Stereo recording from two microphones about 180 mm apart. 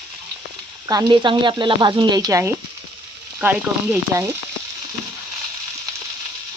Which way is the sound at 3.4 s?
5° right (ahead or behind).